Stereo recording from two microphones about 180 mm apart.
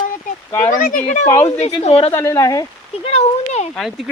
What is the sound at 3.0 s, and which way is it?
Speech, 35° left (ahead or behind).